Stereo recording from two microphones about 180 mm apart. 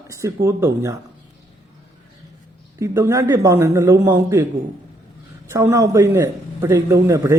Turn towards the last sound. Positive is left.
turn(degrees=-15)  # may be behind; listen again after turning